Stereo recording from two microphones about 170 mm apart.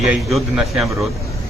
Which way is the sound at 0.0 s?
Centre (ahead or behind).